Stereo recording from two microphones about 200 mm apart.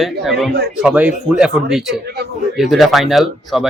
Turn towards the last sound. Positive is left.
turn(degrees=0)  # may be behind; listen again after turning